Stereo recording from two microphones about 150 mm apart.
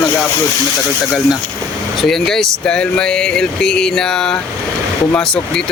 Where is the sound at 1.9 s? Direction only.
Centre (ahead or behind).